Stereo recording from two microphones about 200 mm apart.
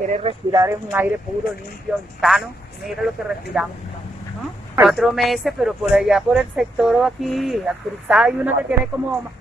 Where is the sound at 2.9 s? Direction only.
Centre (ahead or behind).